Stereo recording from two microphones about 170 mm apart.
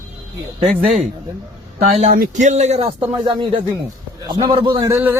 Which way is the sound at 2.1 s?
50° right (ahead or behind).